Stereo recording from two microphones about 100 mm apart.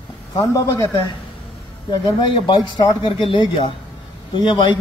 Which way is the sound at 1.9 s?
50° left (ahead or behind).